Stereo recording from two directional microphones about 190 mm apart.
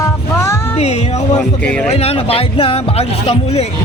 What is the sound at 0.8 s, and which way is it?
Speech, 35° left (ahead or behind).